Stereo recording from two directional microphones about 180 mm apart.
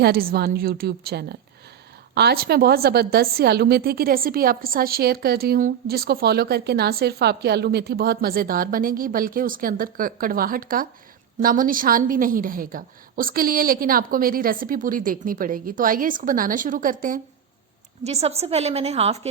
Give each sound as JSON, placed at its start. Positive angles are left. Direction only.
{"t": 0.0, "sound": "a woman's voice", "side_deg": -55}
{"t": 18.0, "sound": "a woman's voice", "side_deg": -35}